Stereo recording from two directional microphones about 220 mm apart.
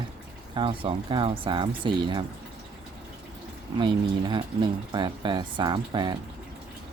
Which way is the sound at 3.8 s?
20° right (ahead or behind).